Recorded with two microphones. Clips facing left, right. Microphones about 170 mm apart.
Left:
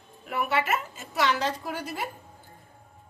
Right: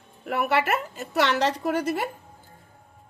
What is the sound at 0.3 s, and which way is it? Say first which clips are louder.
A woman's voice: right 3 dB; 70° right (ahead or behind).